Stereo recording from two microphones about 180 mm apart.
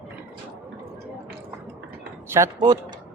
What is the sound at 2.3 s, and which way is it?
Speech, 15° right (ahead or behind).